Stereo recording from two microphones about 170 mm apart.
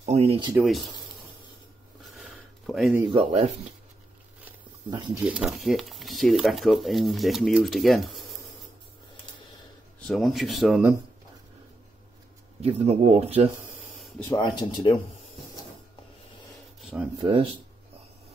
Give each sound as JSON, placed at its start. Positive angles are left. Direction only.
{"t": 0.0, "sound": "a sound", "side_deg": -35}
{"t": 0.5, "sound": "speech", "side_deg": -5}
{"t": 2.1, "sound": "a sound", "side_deg": 0}
{"t": 3.0, "sound": "speech", "side_deg": -30}
{"t": 4.8, "sound": "speech", "side_deg": -30}
{"t": 5.2, "sound": "speech", "side_deg": -5}
{"t": 9.9, "sound": "speech", "side_deg": 0}
{"t": 12.6, "sound": "speech", "side_deg": -35}
{"t": 14.4, "sound": "speech", "side_deg": 25}
{"t": 17.2, "sound": "speech", "side_deg": -30}